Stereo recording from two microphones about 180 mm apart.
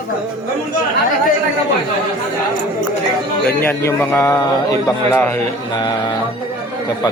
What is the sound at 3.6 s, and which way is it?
A man's voice, 15° left (ahead or behind).